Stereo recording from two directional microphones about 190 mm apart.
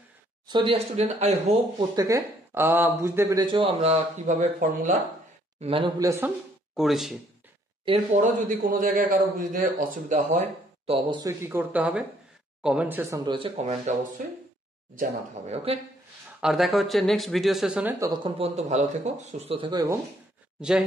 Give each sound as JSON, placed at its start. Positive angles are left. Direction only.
{"t": 0.5, "sound": "speech", "side_deg": -25}
{"t": 1.8, "sound": "speech", "side_deg": -20}
{"t": 3.4, "sound": "speech", "side_deg": -30}
{"t": 5.6, "sound": "speech", "side_deg": -30}
{"t": 5.9, "sound": "speech", "side_deg": -15}
{"t": 7.8, "sound": "a man's voice", "side_deg": -35}
{"t": 11.1, "sound": "speech", "side_deg": -25}
{"t": 11.4, "sound": "speech", "side_deg": -10}
{"t": 16.3, "sound": "speech", "side_deg": 0}
{"t": 17.9, "sound": "speech", "side_deg": -20}
{"t": 20.6, "sound": "speech", "side_deg": -5}